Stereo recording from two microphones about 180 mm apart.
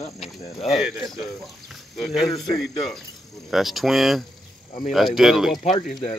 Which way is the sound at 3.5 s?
Centre (ahead or behind).